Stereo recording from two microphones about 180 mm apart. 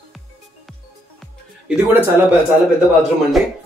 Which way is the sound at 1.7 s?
10° right (ahead or behind).